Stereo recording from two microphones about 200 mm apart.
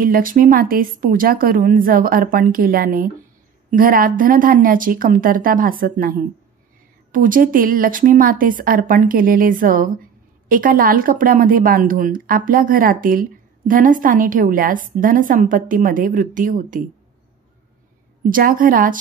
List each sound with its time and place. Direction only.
0.0 s speech: 45° right (ahead or behind)
18.2 s speech: 45° right (ahead or behind)